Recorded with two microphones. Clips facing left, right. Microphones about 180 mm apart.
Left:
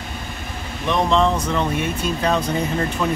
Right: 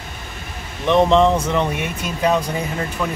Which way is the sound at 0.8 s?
20° right (ahead or behind).